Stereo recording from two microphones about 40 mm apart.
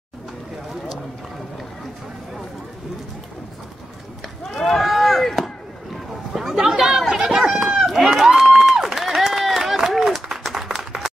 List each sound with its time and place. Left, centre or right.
4.6 s chop: centre
6.3 s chatter: centre
7.8 s crowd: centre
8.7 s a sound: centre